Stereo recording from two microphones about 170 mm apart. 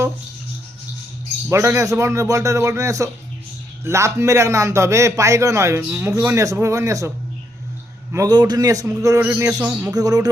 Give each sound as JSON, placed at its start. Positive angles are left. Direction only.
{"t": 1.5, "sound": "a man's voice", "side_deg": -15}
{"t": 8.1, "sound": "a man's voice", "side_deg": -20}
{"t": 9.9, "sound": "a man's voice", "side_deg": -20}